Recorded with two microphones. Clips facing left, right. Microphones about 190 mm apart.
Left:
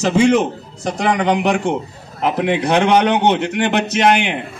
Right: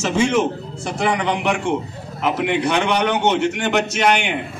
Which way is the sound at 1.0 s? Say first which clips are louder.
Left 4 dB; 35° left (ahead or behind).